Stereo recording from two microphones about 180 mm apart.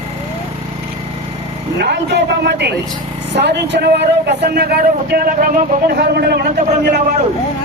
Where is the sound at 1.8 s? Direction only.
65° right (ahead or behind).